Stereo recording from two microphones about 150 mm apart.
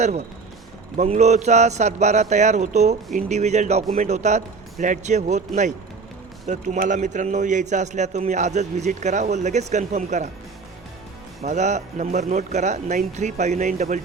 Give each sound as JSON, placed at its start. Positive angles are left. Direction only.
{"t": 0.9, "sound": "a man's voice", "side_deg": -50}
{"t": 6.5, "sound": "a man's voice", "side_deg": -55}
{"t": 11.4, "sound": "a man's voice", "side_deg": -50}